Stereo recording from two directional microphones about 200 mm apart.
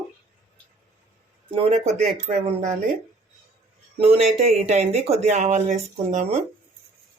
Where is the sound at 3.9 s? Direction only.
30° right (ahead or behind).